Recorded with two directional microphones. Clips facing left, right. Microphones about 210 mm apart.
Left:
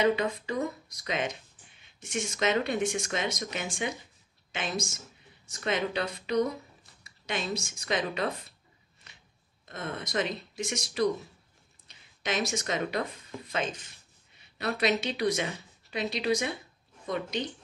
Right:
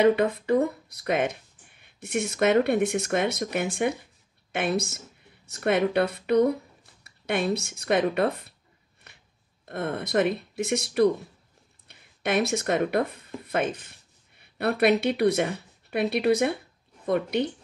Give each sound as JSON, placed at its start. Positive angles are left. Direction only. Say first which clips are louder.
{"t": 0.0, "sound": "speech", "louder": "right 6 dB", "side_deg": -60}
{"t": 9.7, "sound": "speech", "louder": "right 7 dB", "side_deg": -60}